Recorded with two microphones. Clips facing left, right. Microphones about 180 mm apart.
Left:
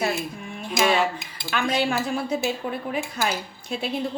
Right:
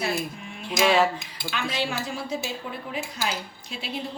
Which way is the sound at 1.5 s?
50° left (ahead or behind).